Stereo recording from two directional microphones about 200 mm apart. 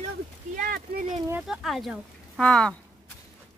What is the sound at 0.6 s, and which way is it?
Speech, 45° right (ahead or behind).